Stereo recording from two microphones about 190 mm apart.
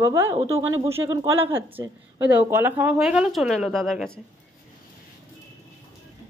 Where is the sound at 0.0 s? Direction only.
15° right (ahead or behind); by 4.2 s centre (ahead or behind).